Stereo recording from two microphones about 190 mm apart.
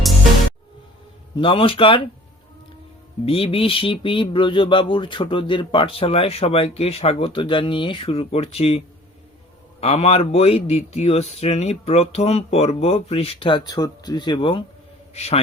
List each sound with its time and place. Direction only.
1.4 s speech: 25° left (ahead or behind)
3.2 s speech: 30° left (ahead or behind)
9.8 s a man's voice: 35° left (ahead or behind)